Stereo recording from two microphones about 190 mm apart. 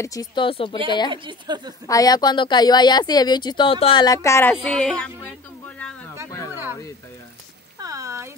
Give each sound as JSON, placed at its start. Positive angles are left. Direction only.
{"t": 0.0, "sound": "speech", "side_deg": 20}
{"t": 1.1, "sound": "a woman's voice", "side_deg": -25}
{"t": 1.9, "sound": "speech", "side_deg": 20}
{"t": 7.8, "sound": "a sound", "side_deg": -15}